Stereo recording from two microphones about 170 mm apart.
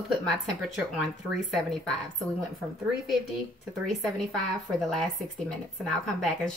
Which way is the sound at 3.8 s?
Centre (ahead or behind).